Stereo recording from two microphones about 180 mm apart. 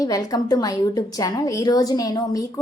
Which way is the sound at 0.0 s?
20° left (ahead or behind).